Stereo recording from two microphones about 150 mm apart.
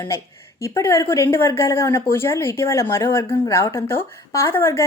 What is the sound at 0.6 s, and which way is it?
A woman's voice, 20° left (ahead or behind).